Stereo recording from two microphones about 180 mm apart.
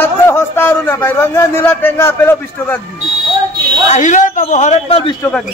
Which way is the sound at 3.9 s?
45° left (ahead or behind).